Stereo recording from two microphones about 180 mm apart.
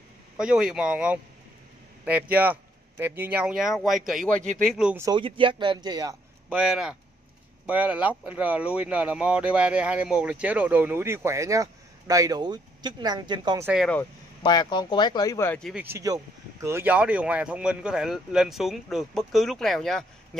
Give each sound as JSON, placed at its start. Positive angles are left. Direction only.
{"t": 0.4, "sound": "speech", "side_deg": -5}
{"t": 4.9, "sound": "speech", "side_deg": -20}
{"t": 6.5, "sound": "speech", "side_deg": -5}
{"t": 14.4, "sound": "speech", "side_deg": 25}
{"t": 15.7, "sound": "speech", "side_deg": -10}